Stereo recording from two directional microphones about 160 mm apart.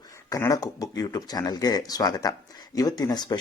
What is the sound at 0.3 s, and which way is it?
A man's voice, 20° left (ahead or behind).